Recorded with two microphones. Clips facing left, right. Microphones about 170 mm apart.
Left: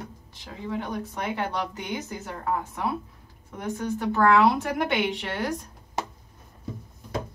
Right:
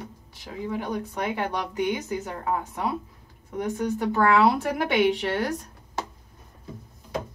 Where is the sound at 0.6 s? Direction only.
10° right (ahead or behind).